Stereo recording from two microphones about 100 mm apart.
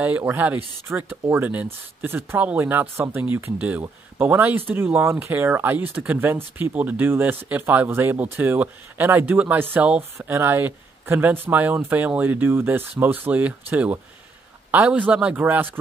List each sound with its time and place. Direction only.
0.2 s speech: 20° right (ahead or behind)